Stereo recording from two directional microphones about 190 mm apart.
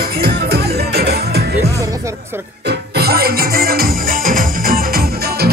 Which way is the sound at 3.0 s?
55° right (ahead or behind).